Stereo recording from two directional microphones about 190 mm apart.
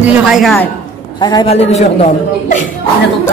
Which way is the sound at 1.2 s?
25° left (ahead or behind).